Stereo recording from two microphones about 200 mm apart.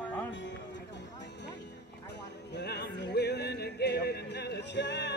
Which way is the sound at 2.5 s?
55° left (ahead or behind).